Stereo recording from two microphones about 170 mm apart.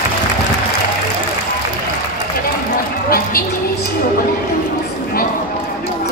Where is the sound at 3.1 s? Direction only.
60° left (ahead or behind).